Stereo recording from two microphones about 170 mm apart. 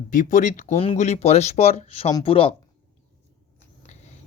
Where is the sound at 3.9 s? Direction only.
40° left (ahead or behind).